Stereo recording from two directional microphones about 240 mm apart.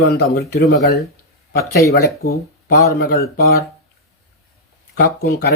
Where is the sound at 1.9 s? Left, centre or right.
Left.